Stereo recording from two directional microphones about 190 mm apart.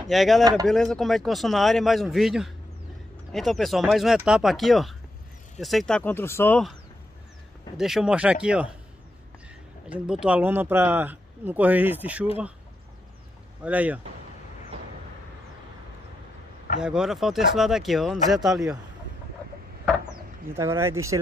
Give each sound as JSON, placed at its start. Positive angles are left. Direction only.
{"t": 0.1, "sound": "speech", "side_deg": 0}
{"t": 0.4, "sound": "speech", "side_deg": -20}
{"t": 0.7, "sound": "speech", "side_deg": 0}
{"t": 7.7, "sound": "speech", "side_deg": -5}
{"t": 9.8, "sound": "speech", "side_deg": -5}
{"t": 13.7, "sound": "speech", "side_deg": -10}
{"t": 16.8, "sound": "speech", "side_deg": -5}
{"t": 20.5, "sound": "speech", "side_deg": -15}